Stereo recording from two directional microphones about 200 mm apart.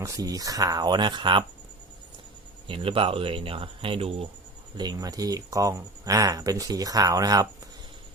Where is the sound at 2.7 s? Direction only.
25° right (ahead or behind).